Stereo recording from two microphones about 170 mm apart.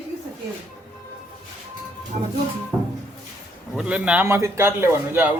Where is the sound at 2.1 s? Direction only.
45° right (ahead or behind).